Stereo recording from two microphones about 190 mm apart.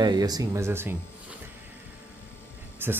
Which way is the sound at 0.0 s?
20° right (ahead or behind).